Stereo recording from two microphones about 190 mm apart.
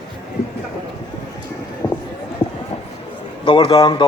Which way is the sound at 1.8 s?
10° left (ahead or behind).